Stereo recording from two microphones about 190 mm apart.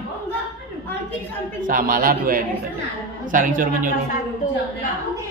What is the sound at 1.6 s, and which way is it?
A man's voice, 45° right (ahead or behind).